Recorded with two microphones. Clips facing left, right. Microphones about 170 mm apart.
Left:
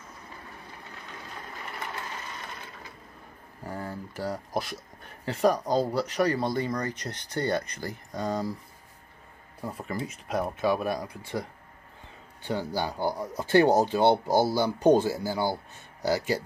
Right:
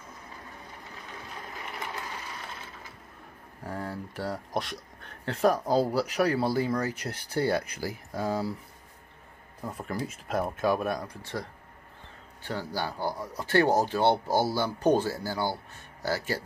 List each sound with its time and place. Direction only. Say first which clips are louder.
3.6 s speech: even; centre (ahead or behind)
9.6 s speech: even; 5° left (ahead or behind)
12.4 s speech: left 3 dB; 15° left (ahead or behind)